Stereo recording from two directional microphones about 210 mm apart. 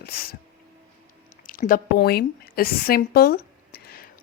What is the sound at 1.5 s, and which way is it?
A woman's voice, 40° left (ahead or behind).